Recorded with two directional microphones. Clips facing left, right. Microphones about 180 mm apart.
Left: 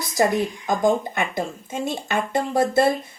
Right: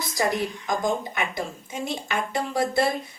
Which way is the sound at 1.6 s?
50° left (ahead or behind).